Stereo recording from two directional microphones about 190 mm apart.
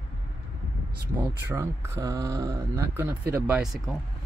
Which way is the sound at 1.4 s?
15° right (ahead or behind).